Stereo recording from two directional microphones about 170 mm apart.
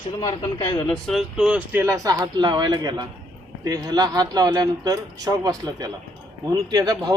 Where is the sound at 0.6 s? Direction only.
15° left (ahead or behind).